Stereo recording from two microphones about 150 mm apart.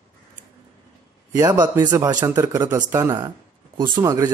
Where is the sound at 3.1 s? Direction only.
30° right (ahead or behind).